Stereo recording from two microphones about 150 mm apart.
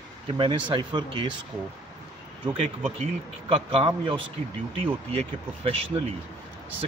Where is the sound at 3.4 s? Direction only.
40° right (ahead or behind).